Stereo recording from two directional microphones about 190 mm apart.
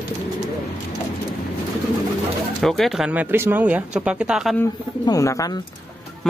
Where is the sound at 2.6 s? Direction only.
Centre (ahead or behind).